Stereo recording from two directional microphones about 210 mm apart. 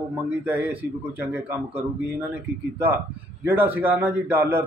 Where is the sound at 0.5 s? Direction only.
10° right (ahead or behind).